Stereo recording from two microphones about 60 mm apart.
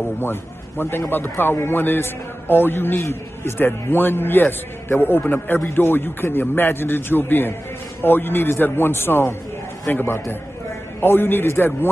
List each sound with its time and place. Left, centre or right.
0.2 s a man's voice: left